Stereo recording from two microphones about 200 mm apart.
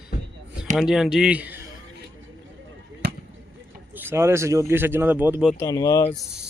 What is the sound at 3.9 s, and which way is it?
Speech, 10° right (ahead or behind).